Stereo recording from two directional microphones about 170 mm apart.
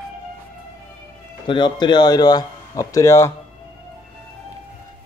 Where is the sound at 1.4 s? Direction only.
30° left (ahead or behind).